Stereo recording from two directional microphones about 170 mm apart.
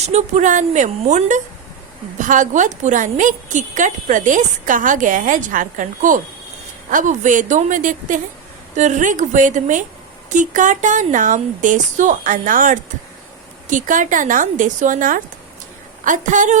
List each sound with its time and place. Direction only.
0.1 s a woman's voice: 45° right (ahead or behind)